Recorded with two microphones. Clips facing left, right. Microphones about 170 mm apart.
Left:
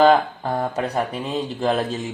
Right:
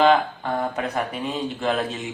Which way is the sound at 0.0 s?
40° left (ahead or behind).